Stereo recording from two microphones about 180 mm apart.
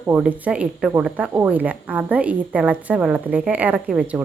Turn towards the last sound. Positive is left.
turn(degrees=-5)  # may be behind; listen again after turning